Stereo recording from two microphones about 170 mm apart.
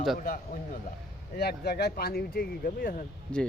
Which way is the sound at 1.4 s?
70° left (ahead or behind).